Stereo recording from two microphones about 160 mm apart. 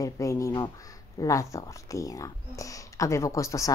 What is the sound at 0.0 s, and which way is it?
Speech, 20° left (ahead or behind).